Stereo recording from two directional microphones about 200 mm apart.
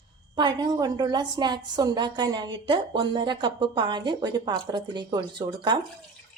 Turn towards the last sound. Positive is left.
turn(degrees=-20)  # may be behind; listen again after turning